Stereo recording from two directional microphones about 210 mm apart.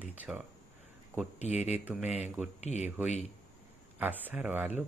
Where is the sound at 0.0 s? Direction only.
10° right (ahead or behind).